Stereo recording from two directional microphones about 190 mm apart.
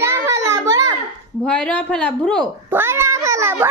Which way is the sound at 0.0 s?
15° right (ahead or behind).